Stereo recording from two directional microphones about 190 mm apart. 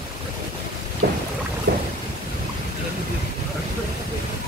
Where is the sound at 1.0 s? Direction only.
55° right (ahead or behind).